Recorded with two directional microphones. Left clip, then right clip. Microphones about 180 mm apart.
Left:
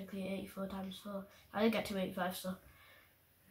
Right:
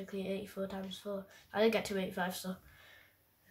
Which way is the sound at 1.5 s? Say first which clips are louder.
Right 4 dB; 45° right (ahead or behind).